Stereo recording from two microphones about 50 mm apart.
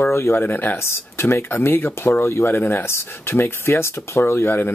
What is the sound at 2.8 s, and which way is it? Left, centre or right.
Speech, left.